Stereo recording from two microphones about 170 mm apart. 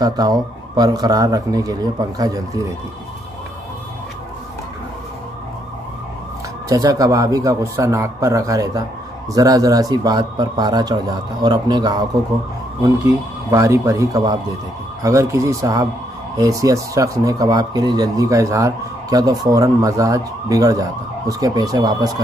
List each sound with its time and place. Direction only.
0.0 s speech: 25° right (ahead or behind)
6.7 s speech: 20° right (ahead or behind)
13.5 s speech: 20° right (ahead or behind)